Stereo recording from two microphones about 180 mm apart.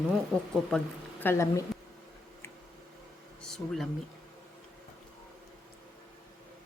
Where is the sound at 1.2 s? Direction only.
15° left (ahead or behind).